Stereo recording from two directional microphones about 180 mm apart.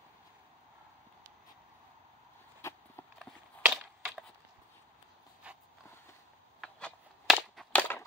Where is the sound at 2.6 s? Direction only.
15° left (ahead or behind).